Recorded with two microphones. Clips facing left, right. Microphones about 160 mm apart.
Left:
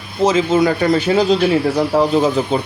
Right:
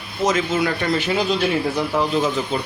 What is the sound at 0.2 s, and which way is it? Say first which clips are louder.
A man's voice: left 6 dB; 30° left (ahead or behind).